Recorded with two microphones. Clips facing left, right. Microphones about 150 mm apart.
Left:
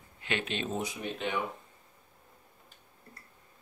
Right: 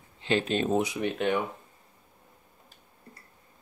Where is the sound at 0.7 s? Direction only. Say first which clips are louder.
Right 8 dB; 80° right.